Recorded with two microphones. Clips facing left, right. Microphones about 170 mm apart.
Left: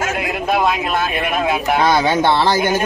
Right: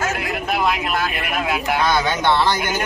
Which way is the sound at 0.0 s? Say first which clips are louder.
Left 3 dB; 20° left (ahead or behind).